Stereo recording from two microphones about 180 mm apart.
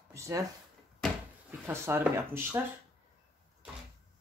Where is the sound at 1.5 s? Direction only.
15° right (ahead or behind).